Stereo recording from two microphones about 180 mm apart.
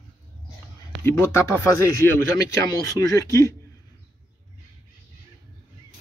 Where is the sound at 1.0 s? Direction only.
15° left (ahead or behind).